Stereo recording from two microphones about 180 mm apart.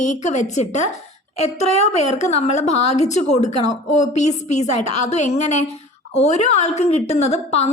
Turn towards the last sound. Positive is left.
turn(degrees=35)  # may be behind; listen again after turning